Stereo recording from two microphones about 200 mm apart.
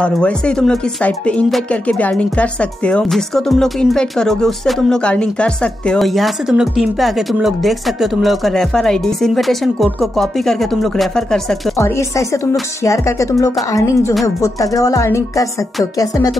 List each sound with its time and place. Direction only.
0.0 s speech: 5° left (ahead or behind)
11.8 s a woman's voice: 15° left (ahead or behind)